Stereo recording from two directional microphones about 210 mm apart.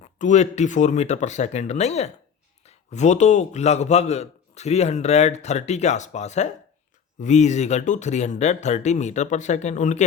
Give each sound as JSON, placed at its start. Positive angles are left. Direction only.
{"t": 0.0, "sound": "a man's voice", "side_deg": 35}